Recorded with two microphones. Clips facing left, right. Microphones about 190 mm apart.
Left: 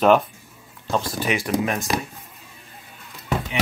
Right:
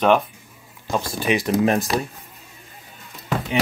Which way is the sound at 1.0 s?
25° right (ahead or behind).